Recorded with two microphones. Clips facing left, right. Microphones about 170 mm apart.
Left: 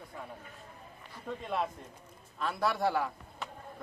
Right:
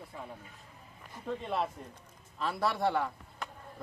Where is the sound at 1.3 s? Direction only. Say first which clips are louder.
Right 1 dB; centre (ahead or behind).